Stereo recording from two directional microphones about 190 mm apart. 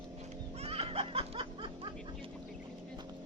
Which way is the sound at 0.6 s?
30° right (ahead or behind).